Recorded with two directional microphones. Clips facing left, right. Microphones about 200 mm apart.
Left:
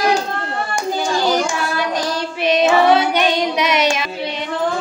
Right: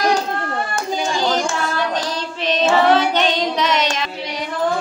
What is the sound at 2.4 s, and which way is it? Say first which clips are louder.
Child singing: left 2 dB; 10° left (ahead or behind).